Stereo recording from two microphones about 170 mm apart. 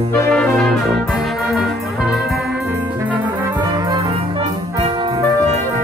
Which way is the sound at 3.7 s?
25° right (ahead or behind).